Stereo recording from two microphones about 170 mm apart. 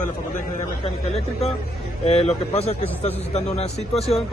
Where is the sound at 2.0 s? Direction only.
35° left (ahead or behind).